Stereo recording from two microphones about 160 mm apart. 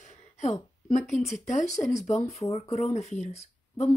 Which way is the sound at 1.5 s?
50° left (ahead or behind).